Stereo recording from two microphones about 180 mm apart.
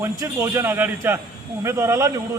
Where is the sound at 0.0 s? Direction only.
15° right (ahead or behind).